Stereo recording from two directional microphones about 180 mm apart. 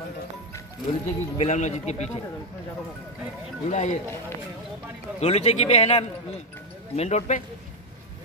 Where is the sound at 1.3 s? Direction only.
40° left (ahead or behind).